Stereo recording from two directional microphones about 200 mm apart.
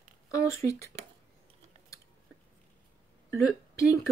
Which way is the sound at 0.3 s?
15° left (ahead or behind).